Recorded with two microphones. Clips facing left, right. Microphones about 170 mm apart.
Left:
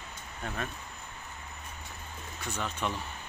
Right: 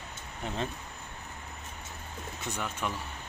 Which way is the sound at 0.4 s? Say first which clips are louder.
Right 2 dB; 20° right (ahead or behind).